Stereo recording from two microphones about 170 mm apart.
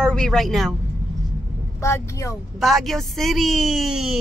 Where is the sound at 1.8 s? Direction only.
15° left (ahead or behind).